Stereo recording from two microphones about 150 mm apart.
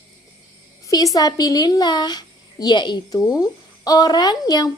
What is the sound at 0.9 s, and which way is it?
A woman's voice, 25° left (ahead or behind).